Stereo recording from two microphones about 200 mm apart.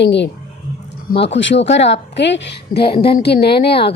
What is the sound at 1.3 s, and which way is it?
A woman's voice, 65° left (ahead or behind).